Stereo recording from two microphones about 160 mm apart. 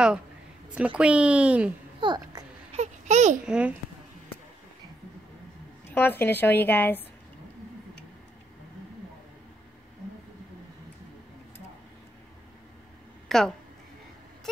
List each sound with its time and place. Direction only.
0.7 s speech: 5° right (ahead or behind)
2.0 s a child's voice: 25° right (ahead or behind)
2.7 s a sound: 45° right (ahead or behind)
3.4 s speech: 5° right (ahead or behind)
5.9 s a woman's voice: 15° left (ahead or behind)
13.3 s a woman's voice: centre (ahead or behind)